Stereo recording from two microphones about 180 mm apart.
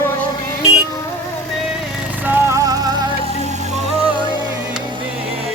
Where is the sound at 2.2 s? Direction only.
10° right (ahead or behind).